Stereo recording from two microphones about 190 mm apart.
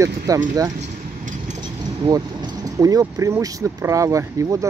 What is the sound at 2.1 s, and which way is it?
Speech, 20° right (ahead or behind).